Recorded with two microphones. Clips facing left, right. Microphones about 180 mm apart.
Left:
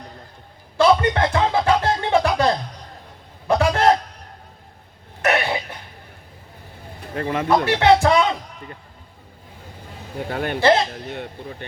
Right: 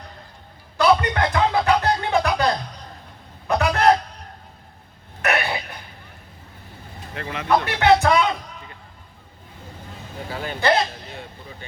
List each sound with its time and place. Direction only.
0.8 s music: 30° left (ahead or behind)
3.4 s a man's voice: 30° left (ahead or behind)
5.2 s throat clearing: 25° left (ahead or behind)
7.2 s speech: 40° left (ahead or behind)
10.2 s speech: 60° left (ahead or behind)